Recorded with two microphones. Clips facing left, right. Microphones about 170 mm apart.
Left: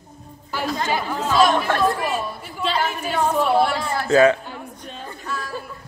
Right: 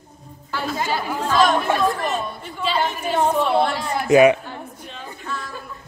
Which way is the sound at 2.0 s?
5° left (ahead or behind).